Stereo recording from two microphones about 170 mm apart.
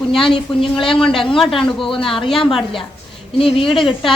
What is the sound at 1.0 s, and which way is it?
A man's voice, 5° left (ahead or behind).